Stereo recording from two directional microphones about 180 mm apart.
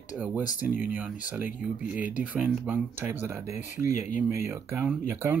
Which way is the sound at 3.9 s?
40° left (ahead or behind).